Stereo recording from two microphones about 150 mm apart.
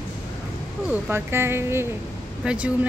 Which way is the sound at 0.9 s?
15° right (ahead or behind).